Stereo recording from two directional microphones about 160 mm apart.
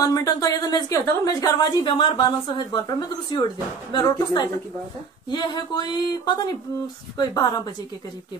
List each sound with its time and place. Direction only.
0.0 s a woman's voice: 25° left (ahead or behind)